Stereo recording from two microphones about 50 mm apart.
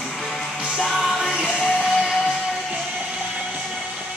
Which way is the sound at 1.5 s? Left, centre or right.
Centre.